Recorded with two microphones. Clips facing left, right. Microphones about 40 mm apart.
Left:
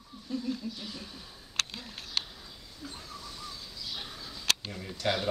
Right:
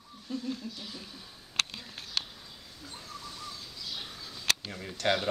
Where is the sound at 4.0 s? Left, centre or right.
Centre.